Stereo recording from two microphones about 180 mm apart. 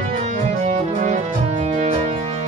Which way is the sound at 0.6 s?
40° right (ahead or behind).